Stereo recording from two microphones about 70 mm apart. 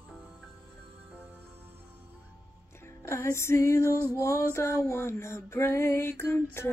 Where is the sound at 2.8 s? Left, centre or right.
Left.